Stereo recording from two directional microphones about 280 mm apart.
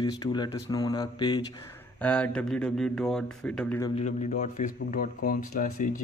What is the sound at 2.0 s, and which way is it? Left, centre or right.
Speech, centre.